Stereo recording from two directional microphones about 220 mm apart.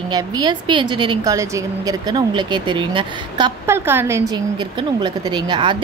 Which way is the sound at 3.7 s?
10° right (ahead or behind).